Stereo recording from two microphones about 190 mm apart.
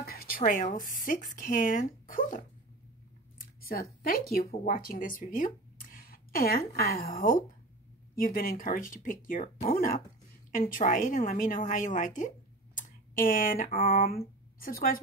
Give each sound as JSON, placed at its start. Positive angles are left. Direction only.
{"t": 0.0, "sound": "speech", "side_deg": 50}
{"t": 3.3, "sound": "a sound", "side_deg": 50}
{"t": 4.0, "sound": "speech", "side_deg": 50}